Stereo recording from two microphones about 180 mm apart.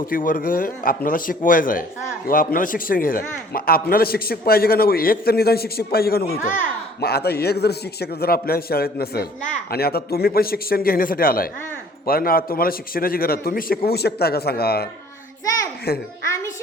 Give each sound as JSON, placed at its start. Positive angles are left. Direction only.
{"t": 0.0, "sound": "a man's voice", "side_deg": 50}
{"t": 15.9, "sound": "a man's voice", "side_deg": 60}